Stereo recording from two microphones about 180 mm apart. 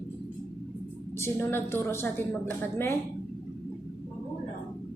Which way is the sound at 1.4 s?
15° left (ahead or behind).